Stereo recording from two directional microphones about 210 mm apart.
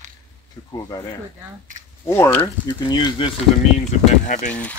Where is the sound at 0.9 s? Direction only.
15° left (ahead or behind).